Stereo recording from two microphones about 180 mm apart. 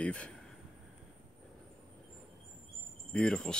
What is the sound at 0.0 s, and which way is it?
Speech, 5° left (ahead or behind).